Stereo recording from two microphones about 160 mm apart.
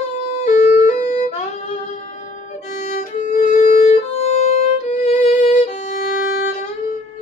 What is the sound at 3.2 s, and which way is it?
Violin, 50° left (ahead or behind).